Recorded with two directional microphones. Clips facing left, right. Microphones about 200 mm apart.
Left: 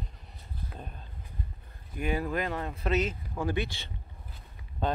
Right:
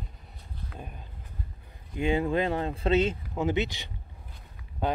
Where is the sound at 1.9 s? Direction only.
25° right (ahead or behind).